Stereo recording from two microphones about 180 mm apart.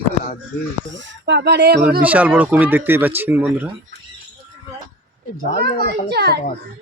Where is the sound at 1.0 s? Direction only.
85° right; by 1.8 s 65° right (ahead or behind).